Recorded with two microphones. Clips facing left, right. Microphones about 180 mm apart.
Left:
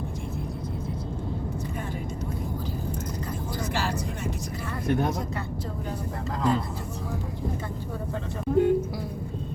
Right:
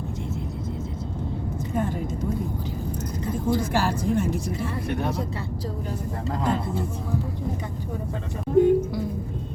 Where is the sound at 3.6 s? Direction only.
50° right (ahead or behind).